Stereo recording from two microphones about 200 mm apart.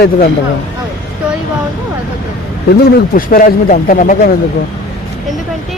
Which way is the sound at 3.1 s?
45° left (ahead or behind).